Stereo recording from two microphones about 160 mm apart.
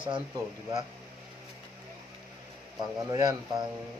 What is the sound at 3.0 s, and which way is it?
Speech, 20° right (ahead or behind).